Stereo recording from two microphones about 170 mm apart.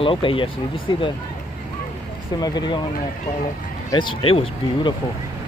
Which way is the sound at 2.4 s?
25° left (ahead or behind).